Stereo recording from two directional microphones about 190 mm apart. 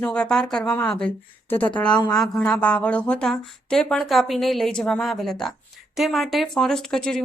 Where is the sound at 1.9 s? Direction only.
20° left (ahead or behind).